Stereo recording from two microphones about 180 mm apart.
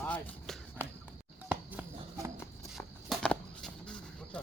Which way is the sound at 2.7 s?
5° left (ahead or behind).